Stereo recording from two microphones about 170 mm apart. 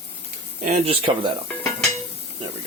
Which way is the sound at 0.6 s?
40° right (ahead or behind).